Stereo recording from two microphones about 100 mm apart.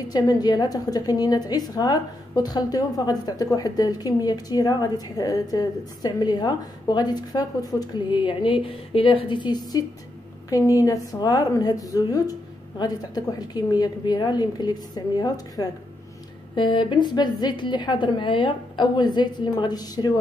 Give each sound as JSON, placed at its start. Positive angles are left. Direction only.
{"t": 0.1, "sound": "a woman's voice", "side_deg": 40}
{"t": 16.5, "sound": "a woman's voice", "side_deg": 55}